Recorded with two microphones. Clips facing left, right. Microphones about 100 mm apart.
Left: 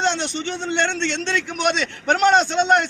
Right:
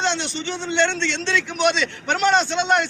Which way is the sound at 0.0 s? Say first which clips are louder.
Left 2 dB; 45° left (ahead or behind).